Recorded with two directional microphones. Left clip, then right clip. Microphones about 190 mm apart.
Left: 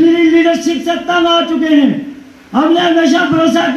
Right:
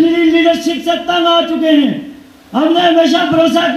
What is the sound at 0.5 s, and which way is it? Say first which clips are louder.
Speech: right 1 dB; 35° right (ahead or behind).